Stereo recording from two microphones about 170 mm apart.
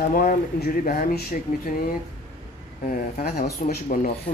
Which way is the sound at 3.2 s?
65° left (ahead or behind).